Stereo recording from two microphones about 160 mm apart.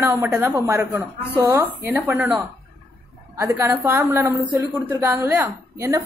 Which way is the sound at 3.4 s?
15° right (ahead or behind).